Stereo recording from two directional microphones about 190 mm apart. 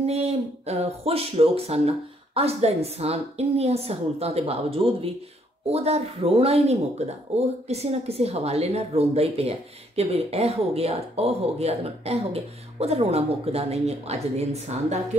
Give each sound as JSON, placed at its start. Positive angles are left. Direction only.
{"t": 0.0, "sound": "speech", "side_deg": -35}